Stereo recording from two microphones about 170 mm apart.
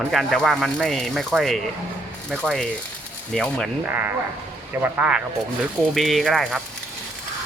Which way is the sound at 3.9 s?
10° right (ahead or behind).